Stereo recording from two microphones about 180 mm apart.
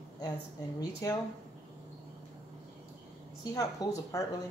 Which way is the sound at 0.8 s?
20° left (ahead or behind).